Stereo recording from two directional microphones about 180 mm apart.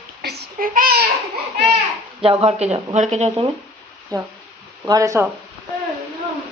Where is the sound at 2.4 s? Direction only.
35° right (ahead or behind).